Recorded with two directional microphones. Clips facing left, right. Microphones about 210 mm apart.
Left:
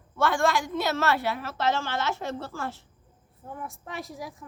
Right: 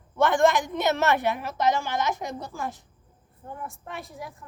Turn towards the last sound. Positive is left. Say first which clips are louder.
# left 1 dB
turn(degrees=0)  # may be behind; listen again after turning